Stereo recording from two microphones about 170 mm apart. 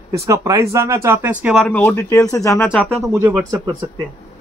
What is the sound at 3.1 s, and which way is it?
Speech, 15° right (ahead or behind).